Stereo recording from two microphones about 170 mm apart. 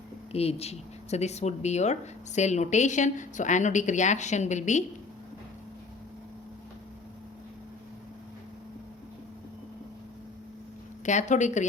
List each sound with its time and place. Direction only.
0.3 s speech: 35° left (ahead or behind)
11.0 s speech: 45° left (ahead or behind)